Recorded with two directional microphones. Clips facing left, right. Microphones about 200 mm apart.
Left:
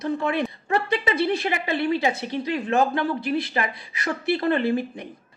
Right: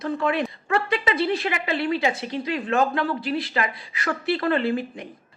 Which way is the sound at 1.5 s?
25° left (ahead or behind).